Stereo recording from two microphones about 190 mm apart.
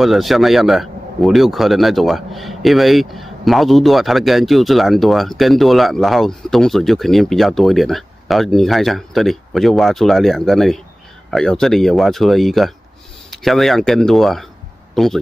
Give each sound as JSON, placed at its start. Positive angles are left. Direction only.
{"t": 0.0, "sound": "speech", "side_deg": 0}